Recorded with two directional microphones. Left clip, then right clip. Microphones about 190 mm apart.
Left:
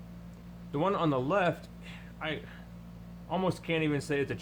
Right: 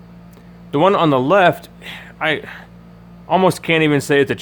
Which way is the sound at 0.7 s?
45° right (ahead or behind).